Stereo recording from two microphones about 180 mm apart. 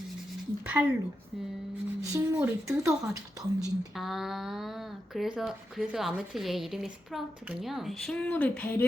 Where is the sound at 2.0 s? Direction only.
15° right (ahead or behind).